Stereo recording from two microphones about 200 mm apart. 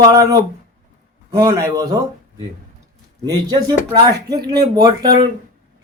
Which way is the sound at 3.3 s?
20° right (ahead or behind).